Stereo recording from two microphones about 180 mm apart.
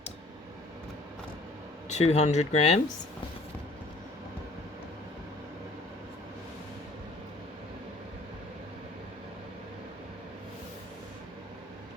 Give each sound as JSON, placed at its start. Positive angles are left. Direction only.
{"t": 1.9, "sound": "speech", "side_deg": 35}